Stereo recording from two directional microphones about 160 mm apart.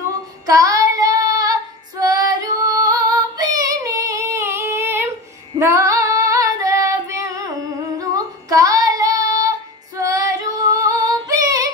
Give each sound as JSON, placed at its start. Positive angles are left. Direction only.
{"t": 0.5, "sound": "child singing", "side_deg": -20}
{"t": 5.6, "sound": "female singing", "side_deg": -20}
{"t": 8.0, "sound": "child singing", "side_deg": -20}
{"t": 9.9, "sound": "female singing", "side_deg": -20}